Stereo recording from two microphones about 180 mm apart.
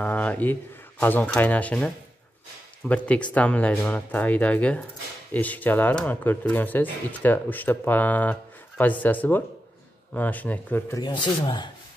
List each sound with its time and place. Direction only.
0.0 s speech: 10° left (ahead or behind)
2.9 s speech: 5° left (ahead or behind)
11.0 s speech: 25° left (ahead or behind)